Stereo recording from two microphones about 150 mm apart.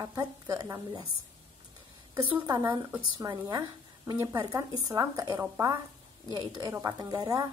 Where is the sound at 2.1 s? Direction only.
35° right (ahead or behind).